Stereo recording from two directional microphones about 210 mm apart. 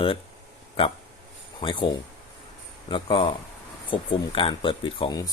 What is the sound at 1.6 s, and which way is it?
A man's voice, 25° left (ahead or behind).